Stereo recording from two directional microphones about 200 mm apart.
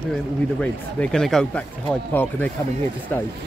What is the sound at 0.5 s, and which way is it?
Speech, 5° left (ahead or behind).